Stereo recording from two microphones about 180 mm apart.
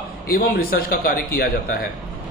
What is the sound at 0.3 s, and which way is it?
A man's voice, 55° left (ahead or behind).